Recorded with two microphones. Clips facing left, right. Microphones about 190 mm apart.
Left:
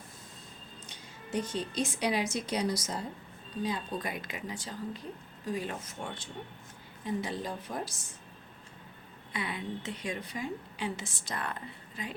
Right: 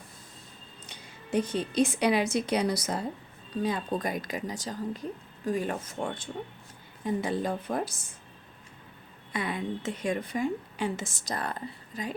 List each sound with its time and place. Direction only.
0.9 s a woman's voice: 60° right (ahead or behind)
9.3 s a woman's voice: 45° right (ahead or behind)